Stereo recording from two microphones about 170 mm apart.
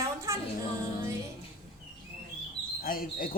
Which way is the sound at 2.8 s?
60° left (ahead or behind).